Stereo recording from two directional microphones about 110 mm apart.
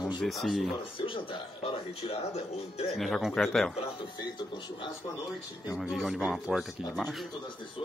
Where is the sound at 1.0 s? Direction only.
55° left (ahead or behind).